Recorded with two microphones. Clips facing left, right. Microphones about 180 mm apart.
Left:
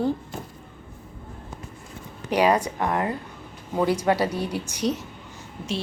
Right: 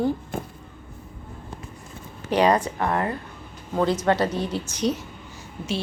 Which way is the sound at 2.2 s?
10° left (ahead or behind).